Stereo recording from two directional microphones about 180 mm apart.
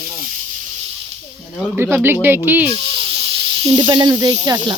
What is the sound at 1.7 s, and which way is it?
Speech, 10° right (ahead or behind).